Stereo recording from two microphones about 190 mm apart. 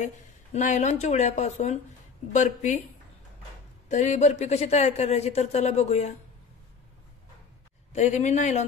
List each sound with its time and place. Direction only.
0.0 s speech: 40° left (ahead or behind)
3.9 s speech: 40° left (ahead or behind)
7.9 s speech: 40° left (ahead or behind)